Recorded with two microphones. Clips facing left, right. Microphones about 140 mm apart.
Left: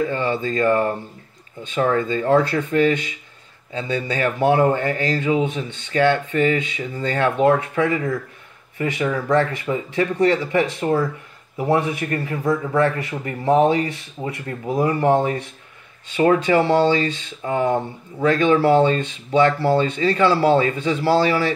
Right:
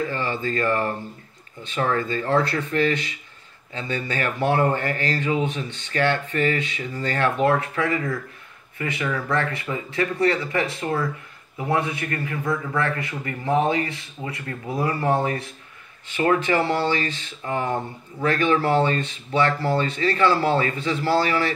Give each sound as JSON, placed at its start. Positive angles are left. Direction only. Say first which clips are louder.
{"t": 0.0, "sound": "speech", "louder": "left 4 dB", "side_deg": 20}